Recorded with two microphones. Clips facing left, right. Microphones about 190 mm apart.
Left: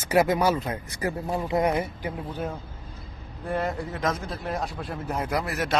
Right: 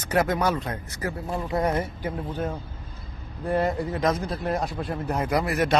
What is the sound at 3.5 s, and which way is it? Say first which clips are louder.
A man's voice: right 4 dB; centre (ahead or behind).